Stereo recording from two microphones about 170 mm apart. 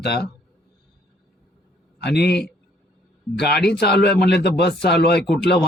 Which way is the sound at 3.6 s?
70° left (ahead or behind).